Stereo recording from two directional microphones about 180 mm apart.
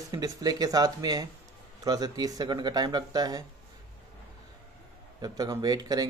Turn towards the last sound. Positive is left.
turn(degrees=-20)  # may be behind; listen again after turning